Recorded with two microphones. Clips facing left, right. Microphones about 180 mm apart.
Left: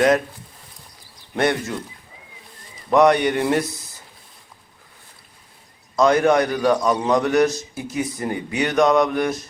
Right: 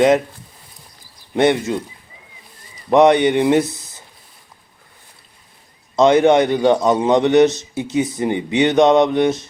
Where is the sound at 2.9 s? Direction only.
25° right (ahead or behind).